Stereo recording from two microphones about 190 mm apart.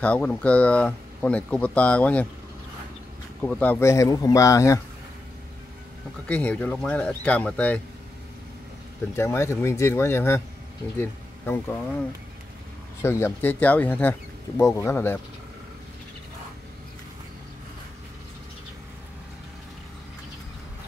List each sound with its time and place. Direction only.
0.0 s speech: 5° left (ahead or behind)
3.4 s speech: 10° left (ahead or behind)
6.2 s speech: 5° left (ahead or behind)
9.1 s speech: 15° left (ahead or behind)
13.0 s speech: 15° left (ahead or behind)